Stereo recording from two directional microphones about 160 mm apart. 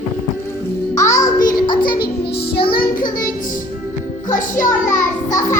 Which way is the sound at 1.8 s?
65° left (ahead or behind).